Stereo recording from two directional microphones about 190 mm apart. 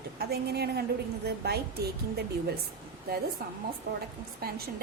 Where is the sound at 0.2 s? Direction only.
55° right (ahead or behind).